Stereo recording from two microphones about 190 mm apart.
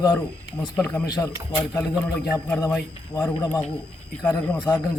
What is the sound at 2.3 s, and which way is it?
A man's voice, 15° left (ahead or behind).